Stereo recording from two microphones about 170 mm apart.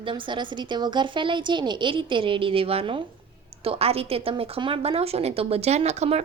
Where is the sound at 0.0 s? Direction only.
30° right (ahead or behind).